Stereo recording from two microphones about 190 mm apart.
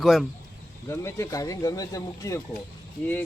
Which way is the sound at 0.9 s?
15° left (ahead or behind).